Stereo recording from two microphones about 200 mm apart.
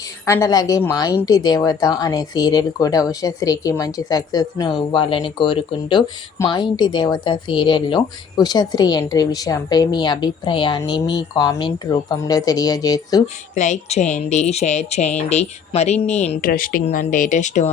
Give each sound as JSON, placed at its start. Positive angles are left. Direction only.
{"t": 0.3, "sound": "a woman's voice", "side_deg": 15}
{"t": 13.2, "sound": "speech", "side_deg": 35}
{"t": 16.5, "sound": "speech", "side_deg": 45}